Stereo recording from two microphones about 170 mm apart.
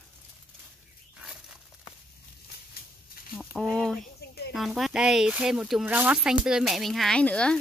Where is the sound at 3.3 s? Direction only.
5° left (ahead or behind).